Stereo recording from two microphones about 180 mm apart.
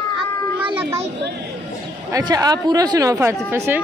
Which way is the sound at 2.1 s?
20° right (ahead or behind).